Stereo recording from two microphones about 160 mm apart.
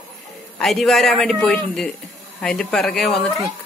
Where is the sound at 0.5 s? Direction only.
Centre (ahead or behind).